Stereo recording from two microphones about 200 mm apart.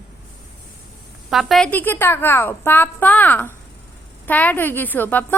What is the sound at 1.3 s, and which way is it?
A woman's voice, centre (ahead or behind).